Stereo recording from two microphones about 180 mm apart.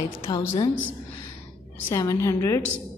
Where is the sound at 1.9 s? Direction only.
15° left (ahead or behind).